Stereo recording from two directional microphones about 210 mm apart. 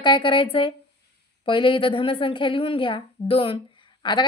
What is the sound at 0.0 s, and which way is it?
A woman's voice, 25° left (ahead or behind).